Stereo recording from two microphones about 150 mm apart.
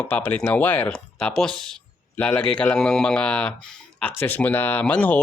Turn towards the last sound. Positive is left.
turn(degrees=10)  # may be behind; listen again after turning